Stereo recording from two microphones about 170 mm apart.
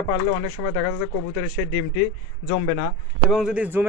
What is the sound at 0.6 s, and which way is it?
Speech, 60° left (ahead or behind).